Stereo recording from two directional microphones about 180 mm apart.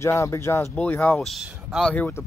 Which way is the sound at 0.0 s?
15° left (ahead or behind).